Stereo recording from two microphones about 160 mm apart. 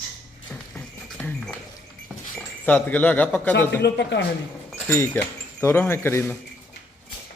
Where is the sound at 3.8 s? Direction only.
90° left.